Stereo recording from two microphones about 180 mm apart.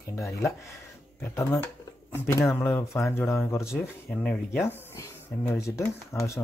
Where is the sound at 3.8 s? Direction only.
5° left (ahead or behind).